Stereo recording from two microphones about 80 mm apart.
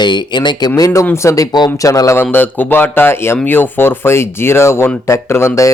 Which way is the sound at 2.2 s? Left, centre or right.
Left.